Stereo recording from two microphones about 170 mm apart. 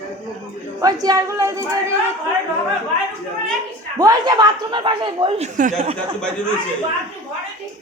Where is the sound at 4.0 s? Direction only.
25° right (ahead or behind).